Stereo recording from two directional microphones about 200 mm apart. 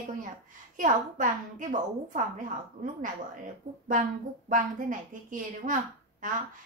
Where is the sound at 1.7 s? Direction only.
40° right (ahead or behind).